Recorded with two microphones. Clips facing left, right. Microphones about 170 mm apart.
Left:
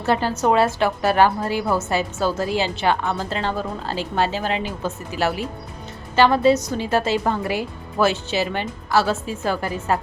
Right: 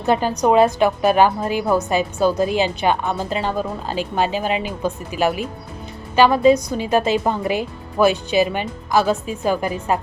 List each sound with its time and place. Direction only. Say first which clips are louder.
0.0 s a woman's voice: right 2 dB; 15° right (ahead or behind)